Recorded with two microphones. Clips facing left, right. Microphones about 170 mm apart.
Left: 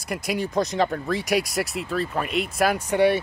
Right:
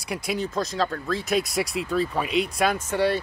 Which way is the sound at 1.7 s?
Centre (ahead or behind).